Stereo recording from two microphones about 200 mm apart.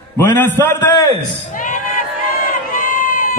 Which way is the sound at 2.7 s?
40° left (ahead or behind).